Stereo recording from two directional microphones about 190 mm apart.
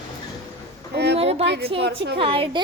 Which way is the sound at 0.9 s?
60° right (ahead or behind).